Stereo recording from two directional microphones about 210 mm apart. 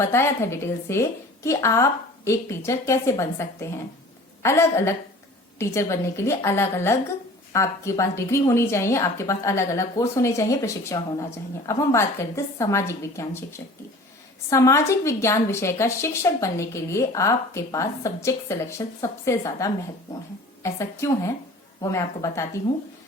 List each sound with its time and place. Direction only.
0.0 s a woman's voice: 10° left (ahead or behind)